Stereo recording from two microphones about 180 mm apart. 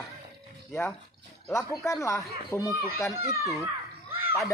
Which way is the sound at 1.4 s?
15° left (ahead or behind).